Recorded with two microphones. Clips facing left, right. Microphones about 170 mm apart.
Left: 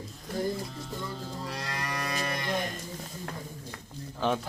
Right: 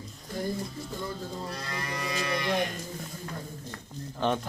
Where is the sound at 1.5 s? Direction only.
80° left; by 2.4 s 50° left (ahead or behind).